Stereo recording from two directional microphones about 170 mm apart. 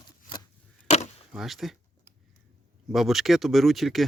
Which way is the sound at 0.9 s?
40° left (ahead or behind).